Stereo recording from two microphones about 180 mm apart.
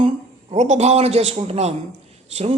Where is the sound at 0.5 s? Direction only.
40° right (ahead or behind).